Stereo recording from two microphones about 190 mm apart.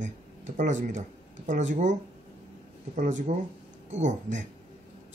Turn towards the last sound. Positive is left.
turn(degrees=-40)  # may be behind; listen again after turning